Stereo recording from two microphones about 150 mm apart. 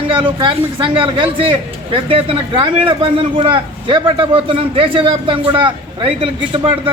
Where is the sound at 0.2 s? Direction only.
30° right (ahead or behind).